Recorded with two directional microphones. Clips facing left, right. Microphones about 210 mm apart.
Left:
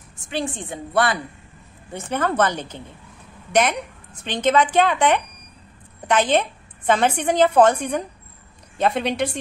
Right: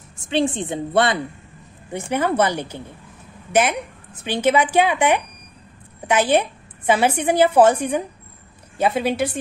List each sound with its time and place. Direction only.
0.3 s a woman's voice: 25° right (ahead or behind)
1.9 s a woman's voice: 15° right (ahead or behind)